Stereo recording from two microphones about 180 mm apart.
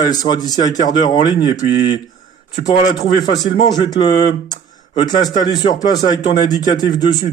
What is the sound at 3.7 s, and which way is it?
A man's voice, 25° left (ahead or behind).